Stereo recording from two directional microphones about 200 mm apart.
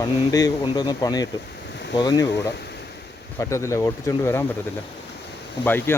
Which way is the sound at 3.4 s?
15° left (ahead or behind).